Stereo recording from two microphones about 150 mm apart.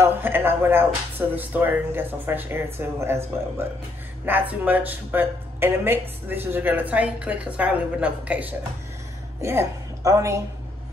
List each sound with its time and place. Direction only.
0.0 s a woman's voice: 15° right (ahead or behind)